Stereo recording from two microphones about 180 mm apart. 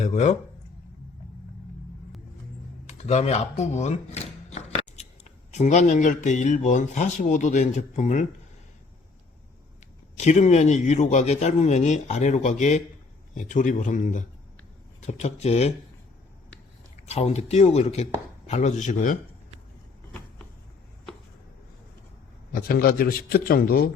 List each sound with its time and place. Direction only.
0.0 s speech: 40° left (ahead or behind)
2.8 s speech: 40° left (ahead or behind)
10.2 s a man's voice: 40° left (ahead or behind)
17.1 s speech: 35° left (ahead or behind)
22.5 s a man's voice: 55° left (ahead or behind)